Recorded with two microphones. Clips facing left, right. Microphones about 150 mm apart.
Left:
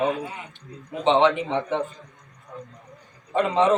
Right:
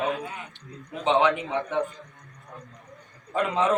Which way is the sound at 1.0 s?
5° right (ahead or behind).